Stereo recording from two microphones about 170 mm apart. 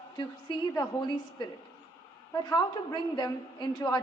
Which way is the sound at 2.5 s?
25° left (ahead or behind).